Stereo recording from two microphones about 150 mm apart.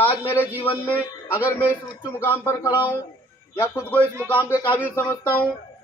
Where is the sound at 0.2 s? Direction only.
15° left (ahead or behind).